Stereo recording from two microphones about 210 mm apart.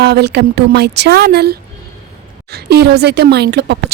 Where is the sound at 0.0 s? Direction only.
50° right (ahead or behind).